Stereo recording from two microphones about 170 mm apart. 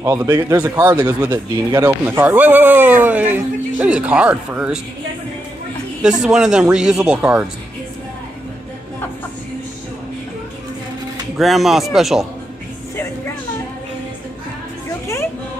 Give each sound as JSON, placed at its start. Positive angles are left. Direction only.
{"t": 0.0, "sound": "speech", "side_deg": -15}
{"t": 6.2, "sound": "speech", "side_deg": -5}
{"t": 11.3, "sound": "speech", "side_deg": 0}